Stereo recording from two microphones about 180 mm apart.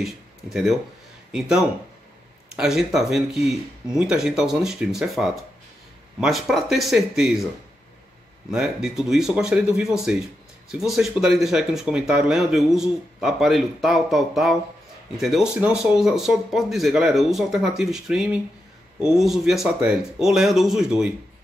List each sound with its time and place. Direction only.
0.0 s speech: centre (ahead or behind)
2.5 s speech: 5° right (ahead or behind)
8.5 s speech: centre (ahead or behind)